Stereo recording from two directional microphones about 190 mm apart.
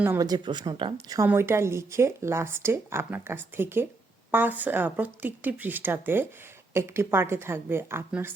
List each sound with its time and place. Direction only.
0.0 s speech: 15° right (ahead or behind)